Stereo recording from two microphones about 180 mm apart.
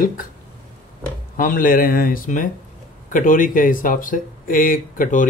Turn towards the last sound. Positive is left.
turn(degrees=50)  # may be behind; listen again after turning